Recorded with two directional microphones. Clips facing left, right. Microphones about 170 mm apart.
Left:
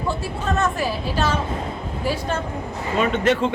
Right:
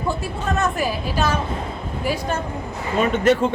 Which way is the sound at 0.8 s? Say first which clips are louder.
Right 1 dB; 15° right (ahead or behind).